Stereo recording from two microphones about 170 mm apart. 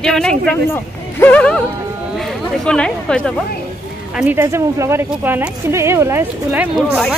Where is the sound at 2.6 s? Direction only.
5° left (ahead or behind).